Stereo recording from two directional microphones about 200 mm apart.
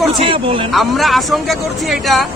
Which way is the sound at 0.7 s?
Centre (ahead or behind).